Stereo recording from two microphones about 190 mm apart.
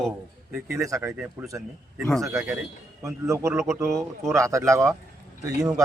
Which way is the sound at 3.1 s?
15° right (ahead or behind).